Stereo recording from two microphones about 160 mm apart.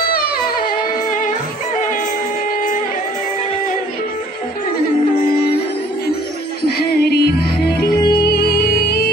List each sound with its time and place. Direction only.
0.1 s music: 65° left (ahead or behind)
6.8 s music: 80° left